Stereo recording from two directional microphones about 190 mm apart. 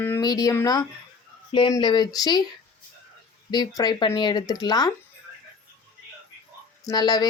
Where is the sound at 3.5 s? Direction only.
20° left (ahead or behind).